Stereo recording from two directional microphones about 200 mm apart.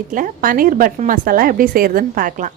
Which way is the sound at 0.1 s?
45° right (ahead or behind).